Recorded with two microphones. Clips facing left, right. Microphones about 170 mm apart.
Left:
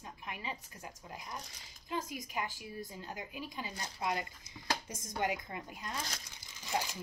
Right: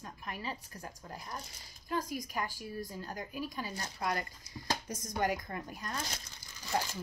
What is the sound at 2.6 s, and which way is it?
Speech, 40° right (ahead or behind).